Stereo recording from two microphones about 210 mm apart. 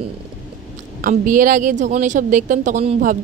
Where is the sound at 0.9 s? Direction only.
40° right (ahead or behind).